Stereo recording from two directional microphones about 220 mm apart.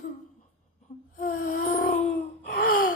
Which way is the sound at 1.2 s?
40° left (ahead or behind).